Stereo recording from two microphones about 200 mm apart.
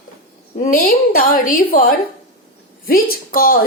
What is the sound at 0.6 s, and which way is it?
A woman's voice, 45° left (ahead or behind).